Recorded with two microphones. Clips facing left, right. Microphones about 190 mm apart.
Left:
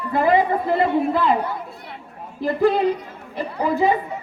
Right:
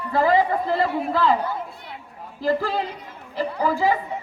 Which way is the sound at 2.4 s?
20° left (ahead or behind).